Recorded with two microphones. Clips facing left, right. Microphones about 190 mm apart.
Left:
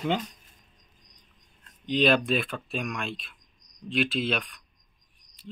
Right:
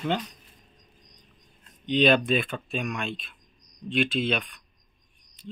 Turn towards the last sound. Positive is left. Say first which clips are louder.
# right 2 dB
turn(degrees=0)  # may be behind; listen again after turning